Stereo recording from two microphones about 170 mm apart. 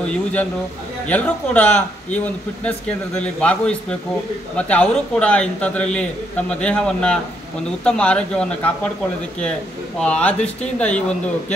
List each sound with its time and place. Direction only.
0.1 s a man's voice: 10° left (ahead or behind)
9.9 s speech: 5° left (ahead or behind)